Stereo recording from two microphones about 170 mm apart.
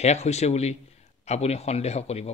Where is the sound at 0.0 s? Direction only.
40° left (ahead or behind).